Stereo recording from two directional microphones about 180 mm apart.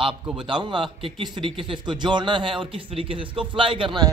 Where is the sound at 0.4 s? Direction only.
25° right (ahead or behind).